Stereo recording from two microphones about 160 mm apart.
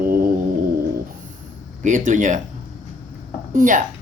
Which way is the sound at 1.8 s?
55° right (ahead or behind).